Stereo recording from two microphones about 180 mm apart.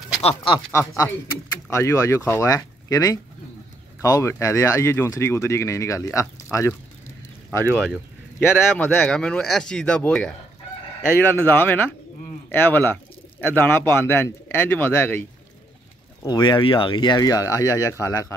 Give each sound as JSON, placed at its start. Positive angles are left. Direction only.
{"t": 0.7, "sound": "speech", "side_deg": 15}
{"t": 7.7, "sound": "speech", "side_deg": 5}
{"t": 16.2, "sound": "speech", "side_deg": 25}